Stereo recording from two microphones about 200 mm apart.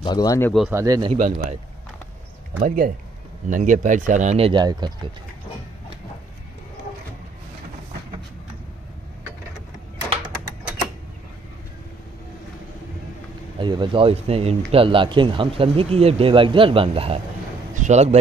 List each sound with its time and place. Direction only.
0.0 s speech: 20° left (ahead or behind)
0.7 s speech: 15° right (ahead or behind)
1.1 s speech: 40° right (ahead or behind)
2.6 s speech: 45° right (ahead or behind); by 5.1 s 20° right (ahead or behind)
13.6 s speech: 25° right (ahead or behind)
17.7 s a sound: 35° right (ahead or behind)